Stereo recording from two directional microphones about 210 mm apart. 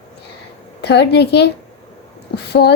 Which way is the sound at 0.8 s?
50° left (ahead or behind).